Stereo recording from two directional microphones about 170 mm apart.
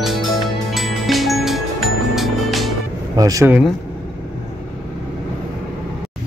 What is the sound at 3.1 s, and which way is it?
Speech, 20° right (ahead or behind).